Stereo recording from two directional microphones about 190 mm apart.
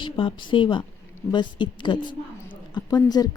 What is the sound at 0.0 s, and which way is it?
A woman's voice, 25° left (ahead or behind).